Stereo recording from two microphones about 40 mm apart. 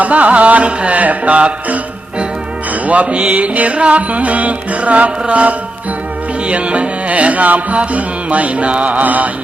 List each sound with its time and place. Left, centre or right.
0.0 s music: right